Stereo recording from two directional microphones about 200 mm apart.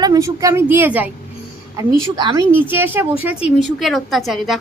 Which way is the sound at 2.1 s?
20° right (ahead or behind).